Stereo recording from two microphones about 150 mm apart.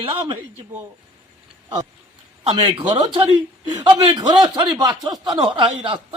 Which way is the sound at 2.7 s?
30° right (ahead or behind).